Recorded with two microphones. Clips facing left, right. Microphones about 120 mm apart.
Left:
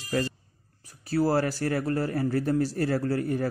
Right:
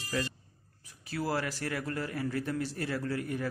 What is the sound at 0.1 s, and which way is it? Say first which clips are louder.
A man's voice: left 6 dB; 40° left (ahead or behind).